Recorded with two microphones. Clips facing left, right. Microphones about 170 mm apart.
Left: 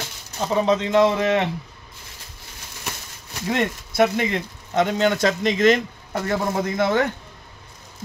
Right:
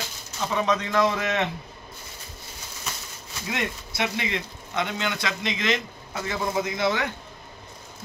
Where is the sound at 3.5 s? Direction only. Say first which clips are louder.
Left 7 dB; 45° left (ahead or behind).